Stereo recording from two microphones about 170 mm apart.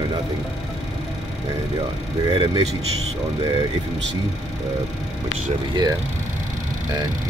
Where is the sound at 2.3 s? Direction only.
25° right (ahead or behind).